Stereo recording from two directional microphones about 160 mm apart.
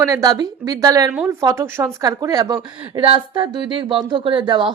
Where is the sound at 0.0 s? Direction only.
20° right (ahead or behind).